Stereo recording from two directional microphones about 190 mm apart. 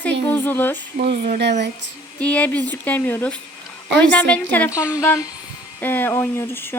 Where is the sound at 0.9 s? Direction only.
55° right (ahead or behind).